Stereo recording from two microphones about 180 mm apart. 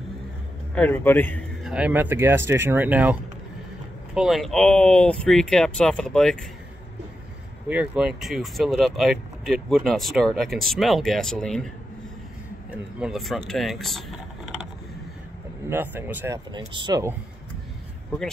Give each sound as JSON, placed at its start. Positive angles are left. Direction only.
{"t": 0.7, "sound": "speech", "side_deg": 10}
{"t": 1.6, "sound": "speech", "side_deg": -5}
{"t": 7.6, "sound": "speech", "side_deg": -5}
{"t": 13.0, "sound": "speech", "side_deg": 0}
{"t": 15.7, "sound": "speech", "side_deg": -10}
{"t": 16.5, "sound": "speech", "side_deg": -25}